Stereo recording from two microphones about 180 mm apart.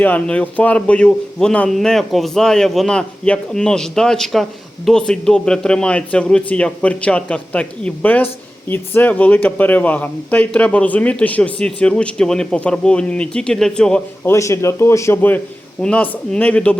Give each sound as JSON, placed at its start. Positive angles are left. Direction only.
{"t": 0.0, "sound": "a man's voice", "side_deg": 10}
{"t": 14.3, "sound": "speech", "side_deg": 15}